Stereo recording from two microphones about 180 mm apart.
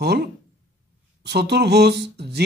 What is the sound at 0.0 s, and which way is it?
Speech, 65° right (ahead or behind).